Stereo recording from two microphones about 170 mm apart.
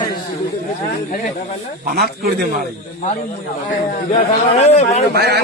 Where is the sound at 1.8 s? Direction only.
65° right (ahead or behind).